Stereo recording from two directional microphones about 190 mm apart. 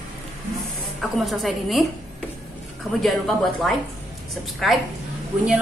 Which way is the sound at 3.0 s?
Centre (ahead or behind).